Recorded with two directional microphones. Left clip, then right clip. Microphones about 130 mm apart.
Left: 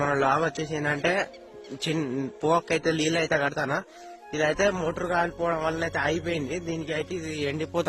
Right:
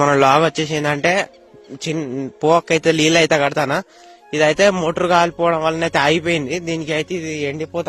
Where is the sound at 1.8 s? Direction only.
35° right (ahead or behind).